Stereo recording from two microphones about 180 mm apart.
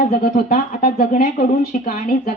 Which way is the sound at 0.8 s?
55° left (ahead or behind).